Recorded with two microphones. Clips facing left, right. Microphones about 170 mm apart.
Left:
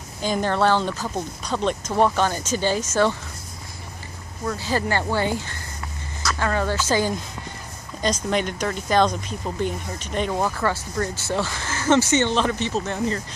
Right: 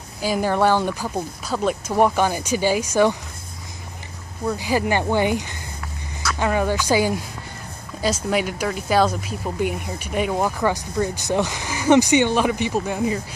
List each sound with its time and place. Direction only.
0.2 s speech: 5° right (ahead or behind)
4.5 s speech: 10° right (ahead or behind)